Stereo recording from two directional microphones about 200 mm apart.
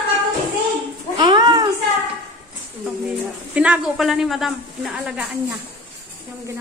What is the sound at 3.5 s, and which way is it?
A woman's voice, 5° right (ahead or behind).